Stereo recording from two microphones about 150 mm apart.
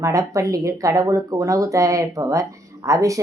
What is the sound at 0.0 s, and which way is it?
Speech, 20° right (ahead or behind).